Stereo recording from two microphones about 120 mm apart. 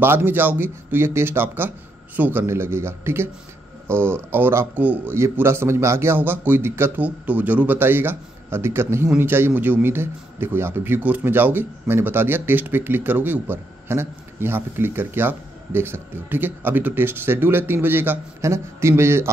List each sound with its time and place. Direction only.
0.0 s a man's voice: 20° right (ahead or behind)